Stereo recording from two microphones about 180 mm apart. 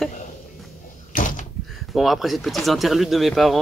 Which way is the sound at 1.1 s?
45° left (ahead or behind).